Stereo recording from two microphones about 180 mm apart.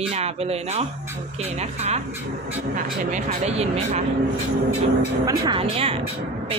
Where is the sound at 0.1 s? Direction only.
35° right (ahead or behind).